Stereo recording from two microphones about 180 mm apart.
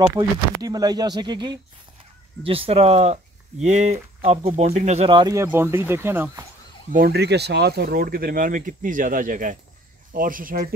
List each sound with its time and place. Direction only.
0.1 s speech: 20° right (ahead or behind)
5.2 s speech: 15° right (ahead or behind)
6.9 s speech: 60° right (ahead or behind)